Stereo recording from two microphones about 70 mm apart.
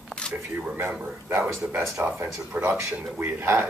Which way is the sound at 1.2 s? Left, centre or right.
Right.